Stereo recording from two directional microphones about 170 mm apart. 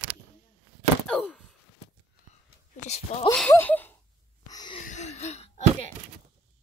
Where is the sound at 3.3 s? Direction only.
10° left (ahead or behind).